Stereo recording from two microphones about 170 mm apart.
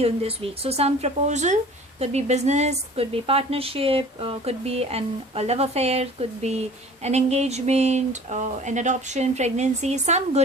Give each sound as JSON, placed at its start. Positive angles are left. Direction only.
{"t": 0.0, "sound": "a woman's voice", "side_deg": -35}